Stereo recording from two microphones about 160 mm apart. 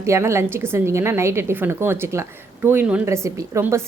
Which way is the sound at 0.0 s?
15° right (ahead or behind).